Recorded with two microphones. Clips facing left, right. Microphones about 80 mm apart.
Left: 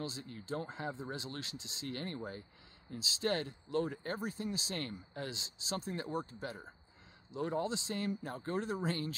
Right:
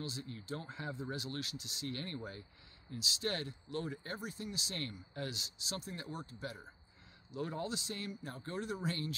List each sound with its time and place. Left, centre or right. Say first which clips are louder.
0.0 s speech: left 1 dB; left